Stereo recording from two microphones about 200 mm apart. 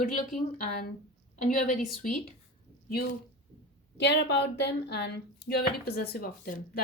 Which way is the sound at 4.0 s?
60° left (ahead or behind).